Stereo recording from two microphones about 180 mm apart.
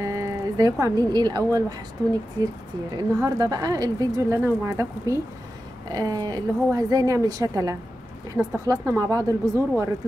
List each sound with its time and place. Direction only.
0.0 s speech: 15° right (ahead or behind)
3.0 s speech: 20° right (ahead or behind)